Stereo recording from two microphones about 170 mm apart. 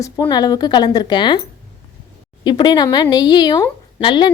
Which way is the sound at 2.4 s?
25° left (ahead or behind).